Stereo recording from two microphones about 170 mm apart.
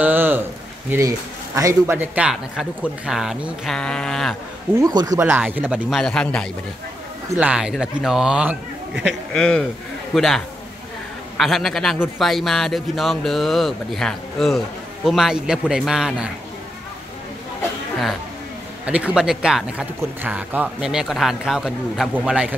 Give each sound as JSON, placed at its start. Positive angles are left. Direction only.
{"t": 0.0, "sound": "a sound", "side_deg": -10}
{"t": 0.8, "sound": "speech", "side_deg": -15}
{"t": 4.7, "sound": "speech", "side_deg": -20}
{"t": 5.2, "sound": "speech", "side_deg": -10}
{"t": 7.3, "sound": "speech", "side_deg": -5}
{"t": 18.9, "sound": "speech", "side_deg": -5}